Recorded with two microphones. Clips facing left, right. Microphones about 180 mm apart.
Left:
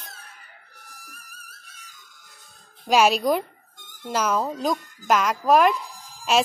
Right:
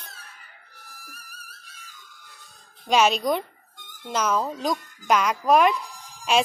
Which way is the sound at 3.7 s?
45° left (ahead or behind).